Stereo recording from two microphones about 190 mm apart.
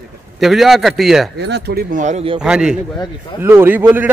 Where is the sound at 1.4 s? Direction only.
60° right (ahead or behind); by 2.4 s 30° right (ahead or behind).